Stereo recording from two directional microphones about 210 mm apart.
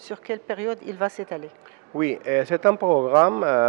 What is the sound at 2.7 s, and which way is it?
Speech, 25° right (ahead or behind).